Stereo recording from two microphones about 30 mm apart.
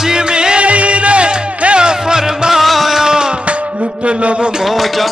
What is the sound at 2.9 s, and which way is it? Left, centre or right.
Music, right.